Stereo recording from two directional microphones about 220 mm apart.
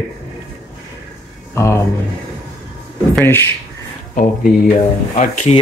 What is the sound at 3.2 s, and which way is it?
Speech, 10° left (ahead or behind).